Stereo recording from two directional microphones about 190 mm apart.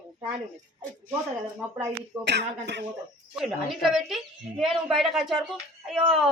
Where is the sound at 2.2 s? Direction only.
60° right (ahead or behind).